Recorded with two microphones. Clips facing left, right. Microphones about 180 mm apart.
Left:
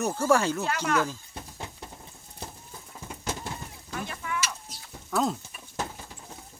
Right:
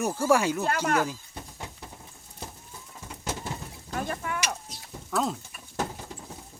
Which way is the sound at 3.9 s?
45° right (ahead or behind).